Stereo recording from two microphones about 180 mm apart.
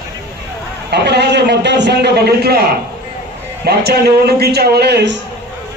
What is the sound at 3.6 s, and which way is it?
A man's voice, 60° right (ahead or behind).